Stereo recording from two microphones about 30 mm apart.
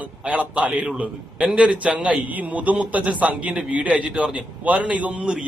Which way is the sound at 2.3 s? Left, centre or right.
Right.